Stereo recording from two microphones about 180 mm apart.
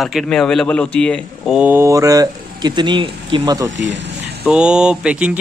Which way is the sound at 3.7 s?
90° right.